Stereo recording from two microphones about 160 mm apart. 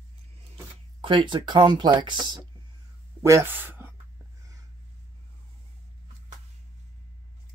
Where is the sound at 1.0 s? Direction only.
30° right (ahead or behind); by 3.9 s 10° right (ahead or behind).